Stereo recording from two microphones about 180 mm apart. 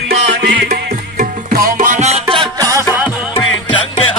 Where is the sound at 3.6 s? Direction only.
30° left (ahead or behind).